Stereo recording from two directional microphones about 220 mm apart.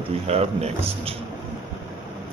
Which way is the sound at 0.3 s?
30° right (ahead or behind).